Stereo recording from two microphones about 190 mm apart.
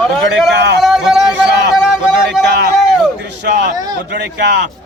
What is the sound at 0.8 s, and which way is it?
A man's voice, centre (ahead or behind).